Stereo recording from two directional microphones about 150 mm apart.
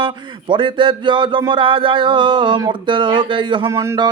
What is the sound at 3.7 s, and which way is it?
Speech, 20° right (ahead or behind).